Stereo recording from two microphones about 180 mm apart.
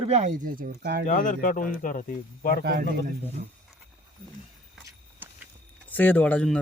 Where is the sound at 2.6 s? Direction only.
65° right (ahead or behind).